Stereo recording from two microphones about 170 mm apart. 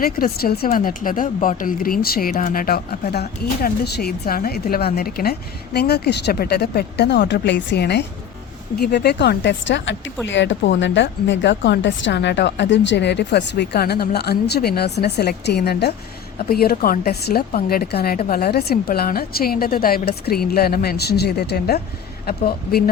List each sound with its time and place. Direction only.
0.0 s a woman's voice: 60° left (ahead or behind)